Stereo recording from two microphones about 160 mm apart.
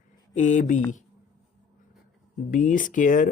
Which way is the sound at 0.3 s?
50° left (ahead or behind).